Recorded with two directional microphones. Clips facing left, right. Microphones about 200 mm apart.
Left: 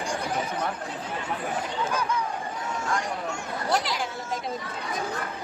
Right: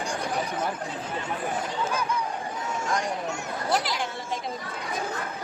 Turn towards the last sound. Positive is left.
turn(degrees=0)  # may be behind; listen again after turning